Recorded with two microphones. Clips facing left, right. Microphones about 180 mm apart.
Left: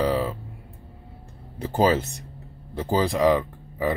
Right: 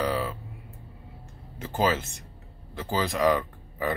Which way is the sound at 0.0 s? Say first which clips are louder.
Left 4 dB; 30° left (ahead or behind).